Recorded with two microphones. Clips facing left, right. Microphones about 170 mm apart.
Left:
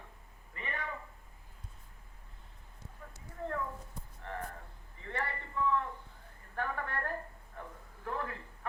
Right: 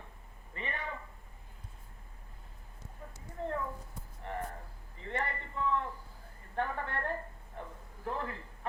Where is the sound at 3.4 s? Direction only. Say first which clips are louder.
Right 1 dB; 25° right (ahead or behind).